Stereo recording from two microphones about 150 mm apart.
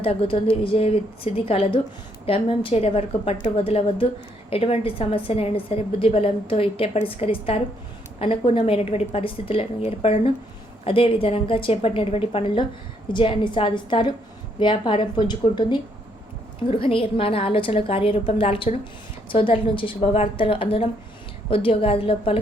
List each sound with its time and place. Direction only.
0.0 s a woman's voice: 40° left (ahead or behind)